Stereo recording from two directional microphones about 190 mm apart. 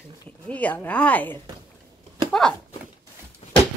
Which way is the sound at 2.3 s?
5° left (ahead or behind).